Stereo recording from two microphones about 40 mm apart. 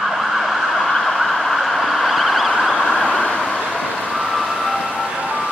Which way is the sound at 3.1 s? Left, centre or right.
Left.